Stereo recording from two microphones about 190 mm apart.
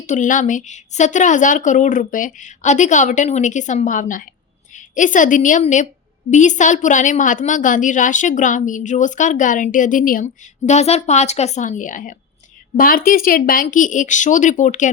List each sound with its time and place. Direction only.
0.0 s a woman's voice: 40° left (ahead or behind)